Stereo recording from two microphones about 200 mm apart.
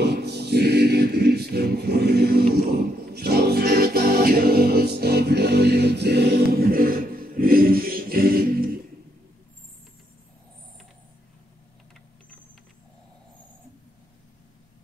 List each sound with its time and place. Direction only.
0.0 s choir: 55° right (ahead or behind)